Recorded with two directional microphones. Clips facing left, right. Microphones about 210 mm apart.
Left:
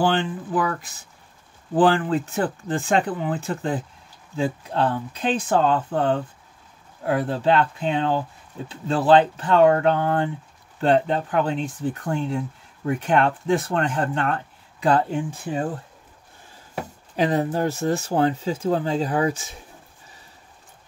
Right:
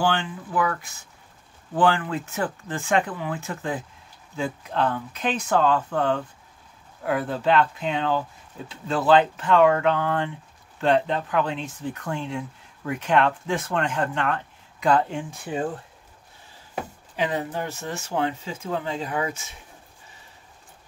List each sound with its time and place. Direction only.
0.1 s speech: 35° left (ahead or behind)
1.8 s speech: 35° left (ahead or behind)
17.1 s speech: 40° left (ahead or behind)